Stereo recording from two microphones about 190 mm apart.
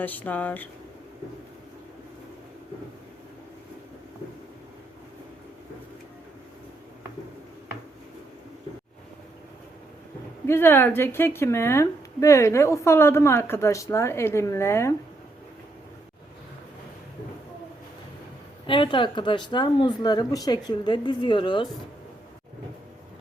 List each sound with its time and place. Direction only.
0.0 s speech: 10° left (ahead or behind)
10.4 s speech: 10° left (ahead or behind)
18.6 s speech: 25° left (ahead or behind)